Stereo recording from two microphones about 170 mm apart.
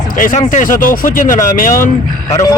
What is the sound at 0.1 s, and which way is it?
Speech, 50° left (ahead or behind).